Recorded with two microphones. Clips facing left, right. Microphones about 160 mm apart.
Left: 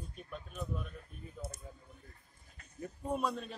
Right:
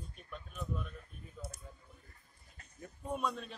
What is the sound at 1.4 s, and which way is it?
Speech, 25° left (ahead or behind).